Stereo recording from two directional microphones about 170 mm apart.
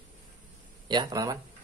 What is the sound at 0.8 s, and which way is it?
Speech, 25° right (ahead or behind).